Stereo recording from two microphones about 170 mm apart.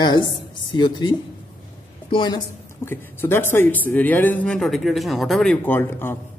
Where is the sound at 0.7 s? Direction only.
25° left (ahead or behind).